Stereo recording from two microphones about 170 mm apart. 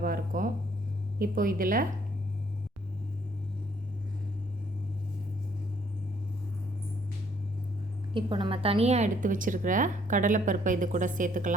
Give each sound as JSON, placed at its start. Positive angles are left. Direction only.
{"t": 0.0, "sound": "a woman's voice", "side_deg": -55}
{"t": 8.1, "sound": "a woman's voice", "side_deg": -30}